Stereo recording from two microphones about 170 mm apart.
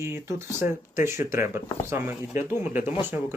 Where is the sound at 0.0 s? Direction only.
15° right (ahead or behind).